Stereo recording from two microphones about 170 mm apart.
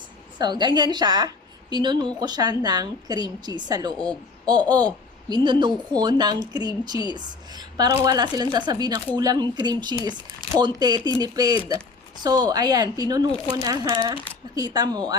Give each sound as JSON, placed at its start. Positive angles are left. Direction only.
{"t": 0.3, "sound": "a woman's voice", "side_deg": -25}